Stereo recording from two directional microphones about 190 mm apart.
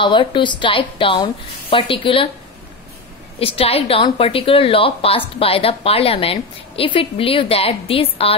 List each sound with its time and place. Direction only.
0.0 s a woman's voice: 25° left (ahead or behind)
3.3 s a woman's voice: 30° left (ahead or behind)